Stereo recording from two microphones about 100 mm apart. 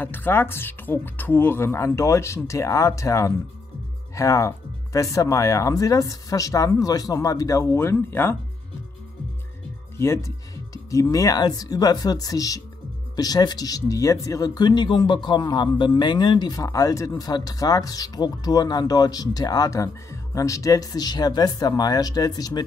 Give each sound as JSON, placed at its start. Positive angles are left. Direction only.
{"t": 0.0, "sound": "speech", "side_deg": 20}
{"t": 9.9, "sound": "speech", "side_deg": 30}